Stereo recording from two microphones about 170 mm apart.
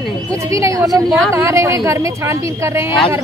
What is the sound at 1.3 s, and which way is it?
A woman's voice, 15° right (ahead or behind).